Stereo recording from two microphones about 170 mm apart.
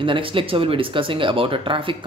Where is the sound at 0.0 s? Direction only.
30° right (ahead or behind).